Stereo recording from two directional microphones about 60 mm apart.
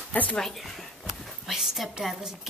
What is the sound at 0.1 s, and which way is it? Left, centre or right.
Speech, left.